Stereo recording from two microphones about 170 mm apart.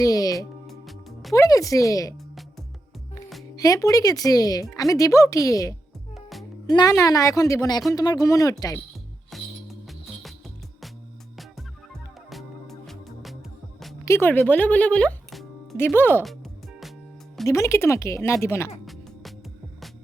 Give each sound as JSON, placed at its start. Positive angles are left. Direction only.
{"t": 0.0, "sound": "music", "side_deg": 20}
{"t": 0.7, "sound": "music", "side_deg": 0}
{"t": 1.3, "sound": "speech", "side_deg": 20}
{"t": 3.5, "sound": "speech", "side_deg": 20}
{"t": 9.3, "sound": "music", "side_deg": 0}
{"t": 12.3, "sound": "music", "side_deg": 0}
{"t": 14.0, "sound": "speech", "side_deg": 15}
{"t": 16.2, "sound": "music", "side_deg": 0}
{"t": 17.4, "sound": "speech", "side_deg": 15}